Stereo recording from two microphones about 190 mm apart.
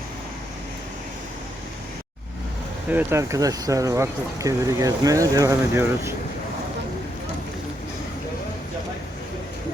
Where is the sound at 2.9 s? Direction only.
10° right (ahead or behind).